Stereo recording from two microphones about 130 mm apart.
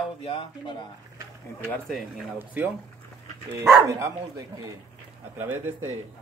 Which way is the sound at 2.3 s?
15° right (ahead or behind).